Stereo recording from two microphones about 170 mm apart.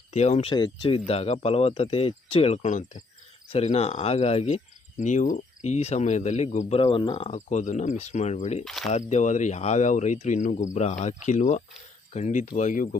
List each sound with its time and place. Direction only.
0.1 s speech: 40° left (ahead or behind)
0.5 s speech: 30° left (ahead or behind)
6.7 s speech: 30° left (ahead or behind)
8.6 s speech: centre (ahead or behind)
8.9 s speech: 45° left (ahead or behind)